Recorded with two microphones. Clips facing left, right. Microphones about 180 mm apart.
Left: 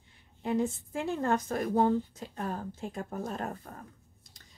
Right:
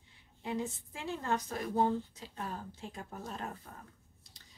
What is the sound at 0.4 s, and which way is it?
Speech, 50° left (ahead or behind).